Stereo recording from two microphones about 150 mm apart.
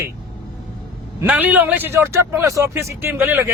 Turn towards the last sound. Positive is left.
turn(degrees=-15)  # may be behind; listen again after turning